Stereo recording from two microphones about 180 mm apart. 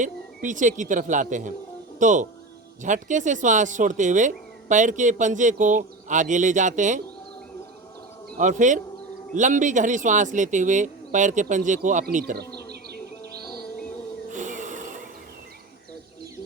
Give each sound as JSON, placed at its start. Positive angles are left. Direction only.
{"t": 0.0, "sound": "a man's voice", "side_deg": -45}
{"t": 8.4, "sound": "a man's voice", "side_deg": -45}
{"t": 12.2, "sound": "bee", "side_deg": -60}
{"t": 14.3, "sound": "music", "side_deg": -45}